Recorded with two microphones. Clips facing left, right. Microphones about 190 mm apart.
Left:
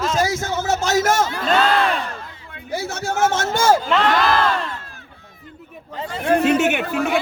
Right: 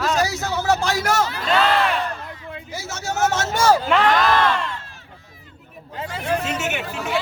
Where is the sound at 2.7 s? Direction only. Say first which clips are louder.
Left 5 dB; 60° left (ahead or behind).